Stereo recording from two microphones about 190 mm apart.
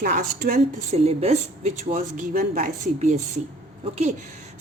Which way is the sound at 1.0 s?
30° right (ahead or behind).